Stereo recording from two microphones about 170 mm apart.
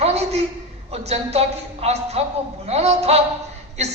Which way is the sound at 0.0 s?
40° right (ahead or behind).